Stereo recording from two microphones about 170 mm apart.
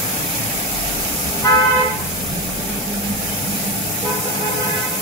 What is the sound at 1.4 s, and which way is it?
Vehicle, 20° left (ahead or behind).